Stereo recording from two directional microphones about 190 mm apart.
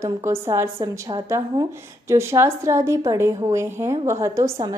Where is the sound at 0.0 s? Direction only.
15° right (ahead or behind).